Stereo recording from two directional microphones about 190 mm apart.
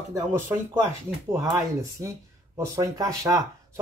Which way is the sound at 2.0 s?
15° right (ahead or behind).